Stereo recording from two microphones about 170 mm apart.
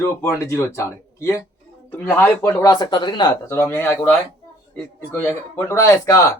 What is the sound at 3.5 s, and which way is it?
A man's voice, 15° left (ahead or behind).